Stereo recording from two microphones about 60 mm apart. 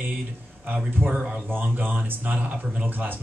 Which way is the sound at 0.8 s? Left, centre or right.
Right.